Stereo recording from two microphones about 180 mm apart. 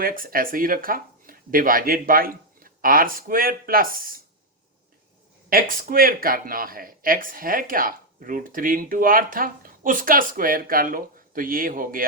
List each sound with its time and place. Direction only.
0.0 s speech: 50° right (ahead or behind)
5.5 s speech: 50° right (ahead or behind)